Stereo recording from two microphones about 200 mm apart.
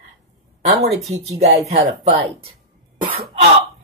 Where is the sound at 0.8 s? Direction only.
35° right (ahead or behind).